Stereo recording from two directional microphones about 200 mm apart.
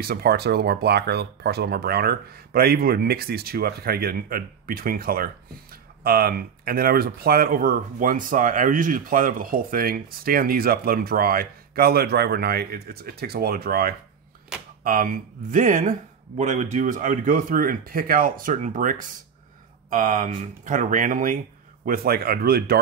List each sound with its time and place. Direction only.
0.0 s speech: 50° right (ahead or behind)